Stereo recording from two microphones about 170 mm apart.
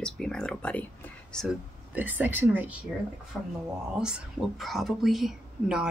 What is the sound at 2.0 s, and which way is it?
Speech, 10° right (ahead or behind).